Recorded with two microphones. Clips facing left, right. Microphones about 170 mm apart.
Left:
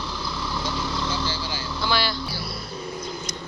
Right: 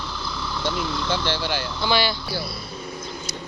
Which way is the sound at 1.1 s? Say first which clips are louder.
Right 4 dB; 70° right (ahead or behind).